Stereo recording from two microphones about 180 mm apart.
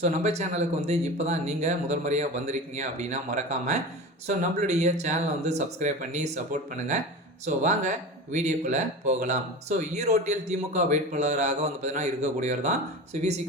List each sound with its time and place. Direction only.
0.0 s speech: 40° right (ahead or behind)